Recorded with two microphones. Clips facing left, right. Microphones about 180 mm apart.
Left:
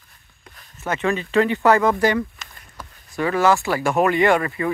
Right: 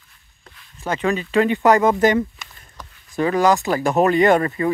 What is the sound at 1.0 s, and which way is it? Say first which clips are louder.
Speech: right 1 dB; 20° right (ahead or behind).